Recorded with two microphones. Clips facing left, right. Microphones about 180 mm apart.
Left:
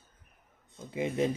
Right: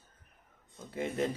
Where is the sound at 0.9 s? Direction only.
5° left (ahead or behind).